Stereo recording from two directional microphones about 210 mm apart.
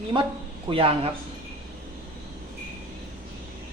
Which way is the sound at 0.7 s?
25° right (ahead or behind).